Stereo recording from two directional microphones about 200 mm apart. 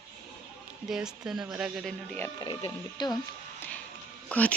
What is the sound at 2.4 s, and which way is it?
Speech, 25° left (ahead or behind).